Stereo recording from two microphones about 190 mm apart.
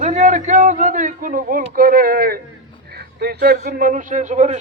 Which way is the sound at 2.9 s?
55° right (ahead or behind).